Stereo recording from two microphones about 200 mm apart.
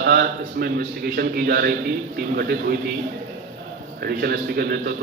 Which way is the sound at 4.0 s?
50° right (ahead or behind).